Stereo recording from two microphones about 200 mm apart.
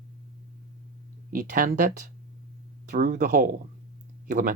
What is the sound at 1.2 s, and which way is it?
Speech, 45° right (ahead or behind).